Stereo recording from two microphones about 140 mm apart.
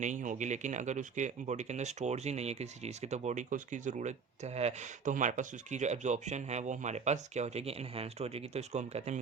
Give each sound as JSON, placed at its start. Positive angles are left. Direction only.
{"t": 0.0, "sound": "speech", "side_deg": -60}